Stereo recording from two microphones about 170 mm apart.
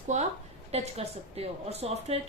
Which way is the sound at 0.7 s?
35° right (ahead or behind).